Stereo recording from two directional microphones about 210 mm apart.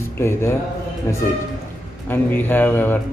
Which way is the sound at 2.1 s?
10° left (ahead or behind).